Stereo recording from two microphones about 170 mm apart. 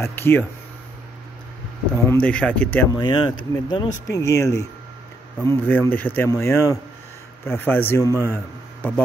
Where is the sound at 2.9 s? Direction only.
30° left (ahead or behind).